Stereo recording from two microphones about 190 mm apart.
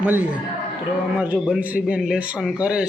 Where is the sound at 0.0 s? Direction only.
10° right (ahead or behind).